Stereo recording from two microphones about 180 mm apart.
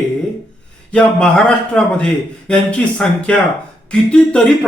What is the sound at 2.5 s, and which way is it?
Speech, 5° left (ahead or behind).